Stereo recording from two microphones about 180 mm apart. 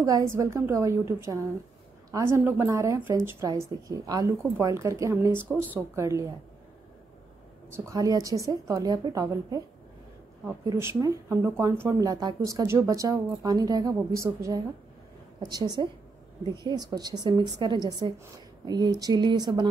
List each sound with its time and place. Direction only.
0.0 s speech: 20° right (ahead or behind)
7.7 s a woman's voice: 15° right (ahead or behind)